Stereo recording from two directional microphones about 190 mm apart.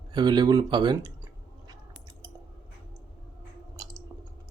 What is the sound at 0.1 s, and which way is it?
Speech, 25° right (ahead or behind).